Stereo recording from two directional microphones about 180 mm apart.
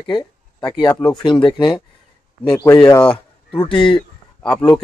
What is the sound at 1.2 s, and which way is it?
Speech, 25° left (ahead or behind).